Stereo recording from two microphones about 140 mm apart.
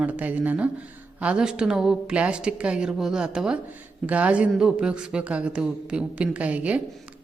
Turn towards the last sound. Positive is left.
turn(degrees=-10)  # may be behind; listen again after turning